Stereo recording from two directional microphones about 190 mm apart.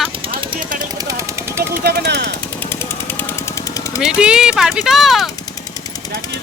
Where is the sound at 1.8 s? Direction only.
60° right (ahead or behind).